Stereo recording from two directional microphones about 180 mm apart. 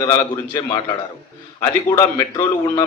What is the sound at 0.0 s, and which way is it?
A man's voice, 20° left (ahead or behind).